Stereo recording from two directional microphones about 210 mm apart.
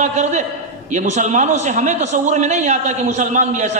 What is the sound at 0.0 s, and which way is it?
A man's voice, 35° right (ahead or behind).